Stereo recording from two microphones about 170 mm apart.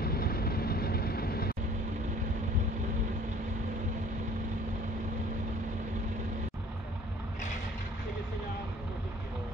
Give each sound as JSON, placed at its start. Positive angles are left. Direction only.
{"t": 0.0, "sound": "vehicle", "side_deg": 65}